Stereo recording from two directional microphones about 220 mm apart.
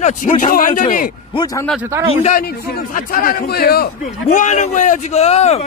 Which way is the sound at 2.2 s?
35° left (ahead or behind).